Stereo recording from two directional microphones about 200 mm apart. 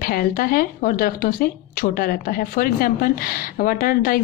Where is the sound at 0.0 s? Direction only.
45° left (ahead or behind).